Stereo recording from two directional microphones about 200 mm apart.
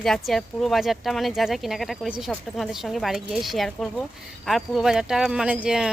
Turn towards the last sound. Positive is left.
turn(degrees=-5)  # may be behind; listen again after turning